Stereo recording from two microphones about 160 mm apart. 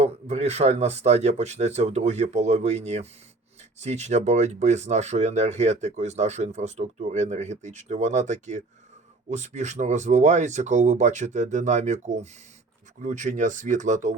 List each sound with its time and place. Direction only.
0.0 s speech: 45° right (ahead or behind)